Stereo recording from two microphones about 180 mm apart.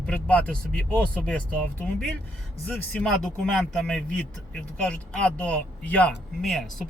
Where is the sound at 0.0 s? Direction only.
5° left (ahead or behind).